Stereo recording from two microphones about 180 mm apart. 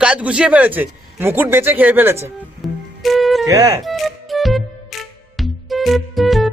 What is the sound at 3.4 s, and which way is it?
Speech, 15° right (ahead or behind).